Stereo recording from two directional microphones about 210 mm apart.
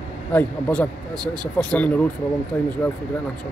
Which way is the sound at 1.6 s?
5° left (ahead or behind).